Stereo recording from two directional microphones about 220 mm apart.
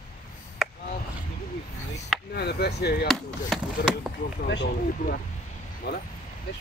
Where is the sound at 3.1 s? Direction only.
Centre (ahead or behind).